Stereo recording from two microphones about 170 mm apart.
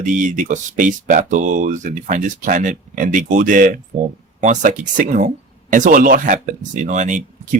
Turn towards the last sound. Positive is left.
turn(degrees=-45)  # may be behind; listen again after turning